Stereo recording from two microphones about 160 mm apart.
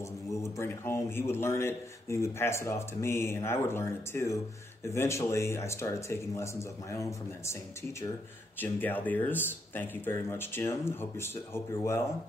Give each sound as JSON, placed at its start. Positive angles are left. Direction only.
{"t": 0.0, "sound": "a man's voice", "side_deg": 20}
{"t": 8.5, "sound": "a man's voice", "side_deg": 10}